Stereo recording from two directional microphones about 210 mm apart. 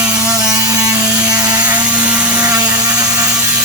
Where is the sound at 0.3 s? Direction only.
15° right (ahead or behind).